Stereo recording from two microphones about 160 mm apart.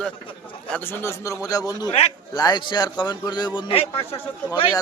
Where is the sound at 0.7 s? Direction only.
15° left (ahead or behind).